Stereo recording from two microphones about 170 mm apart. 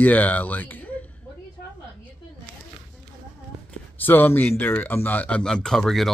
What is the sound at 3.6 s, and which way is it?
Speech, 10° left (ahead or behind).